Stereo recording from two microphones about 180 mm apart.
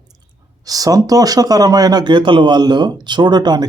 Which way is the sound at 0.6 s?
20° right (ahead or behind).